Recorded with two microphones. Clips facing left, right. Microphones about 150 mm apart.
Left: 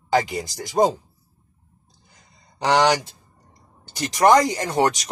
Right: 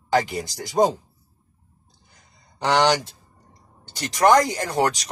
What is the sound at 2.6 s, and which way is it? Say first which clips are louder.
Speech: left 1 dB; 10° left (ahead or behind).